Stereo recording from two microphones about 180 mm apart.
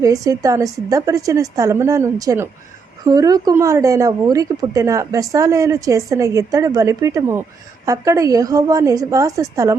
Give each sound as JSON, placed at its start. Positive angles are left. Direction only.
{"t": 0.0, "sound": "speech", "side_deg": -20}